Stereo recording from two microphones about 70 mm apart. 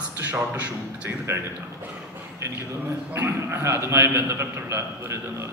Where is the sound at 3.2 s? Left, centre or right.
Right.